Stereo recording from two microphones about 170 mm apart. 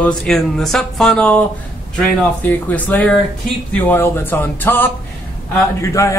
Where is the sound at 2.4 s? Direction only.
10° left (ahead or behind).